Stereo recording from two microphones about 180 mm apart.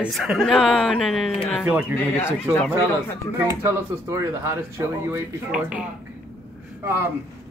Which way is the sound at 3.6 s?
15° right (ahead or behind).